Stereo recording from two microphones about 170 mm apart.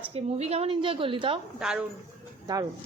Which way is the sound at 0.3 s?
40° right (ahead or behind).